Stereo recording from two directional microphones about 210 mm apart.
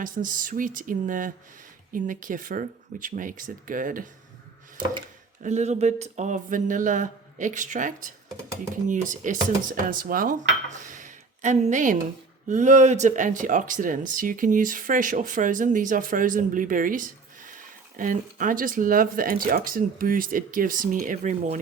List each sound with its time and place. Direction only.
0.0 s speech: 40° right (ahead or behind)
5.4 s speech: 35° right (ahead or behind)
10.8 s a sound: 40° right (ahead or behind)
12.5 s speech: 35° right (ahead or behind)